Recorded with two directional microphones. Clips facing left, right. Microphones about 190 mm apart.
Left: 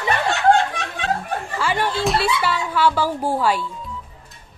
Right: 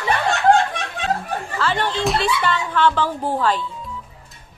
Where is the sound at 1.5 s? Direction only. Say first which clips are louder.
Even; 10° left (ahead or behind).